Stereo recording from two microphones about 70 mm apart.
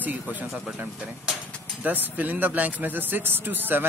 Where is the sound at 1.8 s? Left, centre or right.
Right.